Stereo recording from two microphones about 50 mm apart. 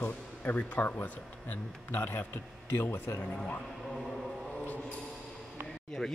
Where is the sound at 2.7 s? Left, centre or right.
Left.